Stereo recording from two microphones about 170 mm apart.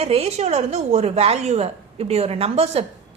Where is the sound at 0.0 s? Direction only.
35° right (ahead or behind).